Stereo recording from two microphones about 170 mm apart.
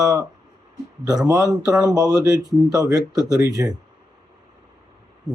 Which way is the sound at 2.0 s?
20° right (ahead or behind).